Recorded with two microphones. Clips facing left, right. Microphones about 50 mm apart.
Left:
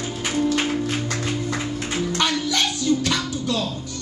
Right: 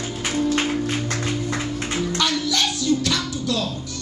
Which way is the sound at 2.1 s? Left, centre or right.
Left.